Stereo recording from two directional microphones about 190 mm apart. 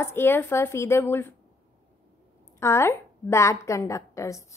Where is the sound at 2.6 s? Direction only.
15° left (ahead or behind).